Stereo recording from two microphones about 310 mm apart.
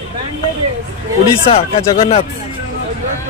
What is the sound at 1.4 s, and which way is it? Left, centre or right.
Speech, centre.